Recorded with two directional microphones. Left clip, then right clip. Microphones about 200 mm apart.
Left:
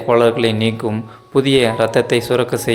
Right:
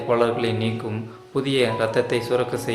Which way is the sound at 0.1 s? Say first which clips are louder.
Left 8 dB; 40° left (ahead or behind).